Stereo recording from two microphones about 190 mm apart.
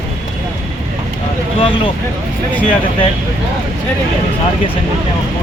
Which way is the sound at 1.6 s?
25° left (ahead or behind).